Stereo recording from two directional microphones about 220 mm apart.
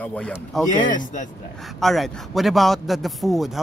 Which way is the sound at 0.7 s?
35° left (ahead or behind).